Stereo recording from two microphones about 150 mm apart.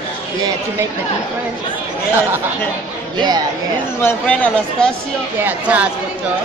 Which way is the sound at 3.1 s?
30° right (ahead or behind).